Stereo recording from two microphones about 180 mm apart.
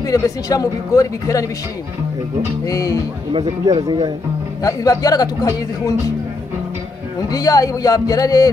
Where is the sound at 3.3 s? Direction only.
25° right (ahead or behind).